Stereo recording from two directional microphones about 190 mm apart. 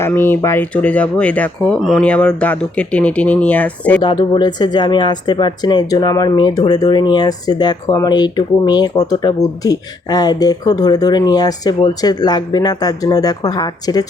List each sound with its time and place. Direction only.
0.0 s speech: 10° left (ahead or behind)
4.0 s speech: 25° left (ahead or behind)